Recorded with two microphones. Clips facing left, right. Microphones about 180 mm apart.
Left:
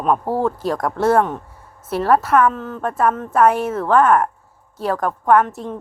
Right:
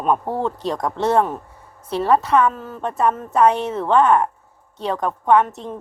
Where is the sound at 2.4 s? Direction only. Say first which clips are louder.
Left 2 dB; 10° right (ahead or behind).